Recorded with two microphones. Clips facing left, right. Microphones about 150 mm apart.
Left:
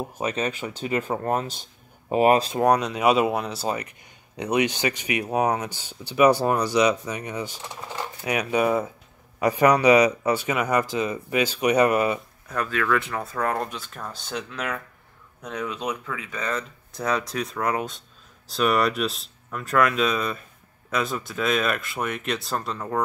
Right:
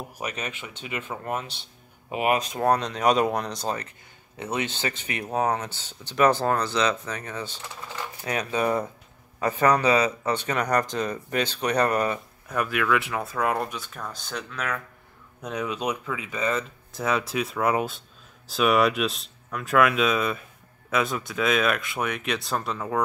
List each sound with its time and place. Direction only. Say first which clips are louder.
0.0 s speech: left 6 dB; 30° left (ahead or behind)
2.6 s speech: left 2 dB; 10° left (ahead or behind)
12.5 s speech: even; 10° right (ahead or behind); by 14.8 s 5° left (ahead or behind)
15.4 s speech: right 1 dB; 10° right (ahead or behind)